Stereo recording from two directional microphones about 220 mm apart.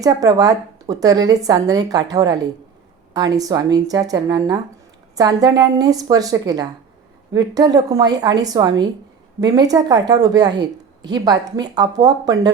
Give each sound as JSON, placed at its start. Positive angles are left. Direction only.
{"t": 0.0, "sound": "speech", "side_deg": -15}